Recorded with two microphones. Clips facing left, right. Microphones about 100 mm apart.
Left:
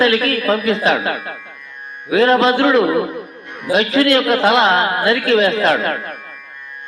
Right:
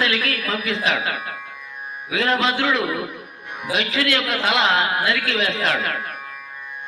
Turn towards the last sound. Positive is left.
turn(degrees=40)  # may be behind; listen again after turning